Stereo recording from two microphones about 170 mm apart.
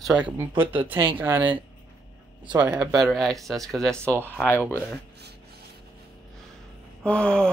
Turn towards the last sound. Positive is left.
turn(degrees=5)  # may be behind; listen again after turning